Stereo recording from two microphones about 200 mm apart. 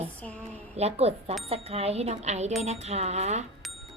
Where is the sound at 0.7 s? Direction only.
30° right (ahead or behind).